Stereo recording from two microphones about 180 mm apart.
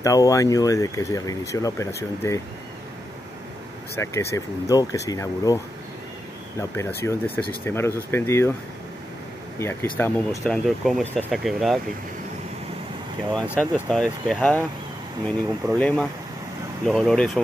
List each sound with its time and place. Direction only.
0.0 s speech: 20° left (ahead or behind)
4.0 s speech: 15° left (ahead or behind)
6.8 s speech: 15° left (ahead or behind)
9.6 s speech: 15° left (ahead or behind)
13.8 s speech: 5° left (ahead or behind)